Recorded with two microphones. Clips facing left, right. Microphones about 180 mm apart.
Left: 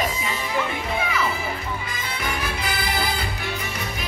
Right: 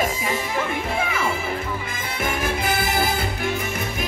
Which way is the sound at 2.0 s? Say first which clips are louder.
Right 4 dB; 50° right (ahead or behind).